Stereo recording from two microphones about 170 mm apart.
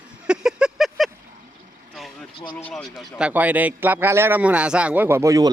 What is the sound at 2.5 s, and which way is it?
A man's voice, 5° left (ahead or behind).